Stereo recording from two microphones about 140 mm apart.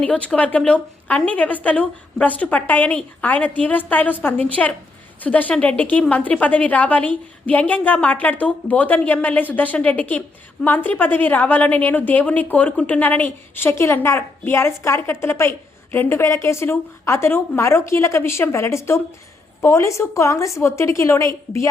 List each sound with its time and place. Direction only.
0.0 s a woman's voice: 10° left (ahead or behind)